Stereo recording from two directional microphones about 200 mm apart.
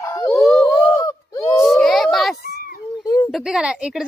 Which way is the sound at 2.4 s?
50° left (ahead or behind).